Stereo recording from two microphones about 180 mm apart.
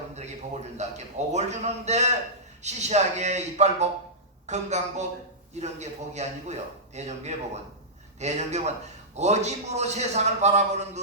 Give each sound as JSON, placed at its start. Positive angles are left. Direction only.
{"t": 0.1, "sound": "a man's voice", "side_deg": -40}